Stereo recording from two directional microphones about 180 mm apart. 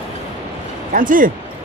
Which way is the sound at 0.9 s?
50° right (ahead or behind).